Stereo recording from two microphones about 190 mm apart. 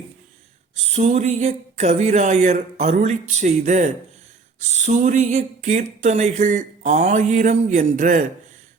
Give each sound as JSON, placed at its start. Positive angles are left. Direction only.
{"t": 0.9, "sound": "speech", "side_deg": -35}